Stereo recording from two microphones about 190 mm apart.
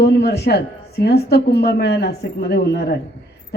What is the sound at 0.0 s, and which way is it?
A man's voice, 60° left (ahead or behind).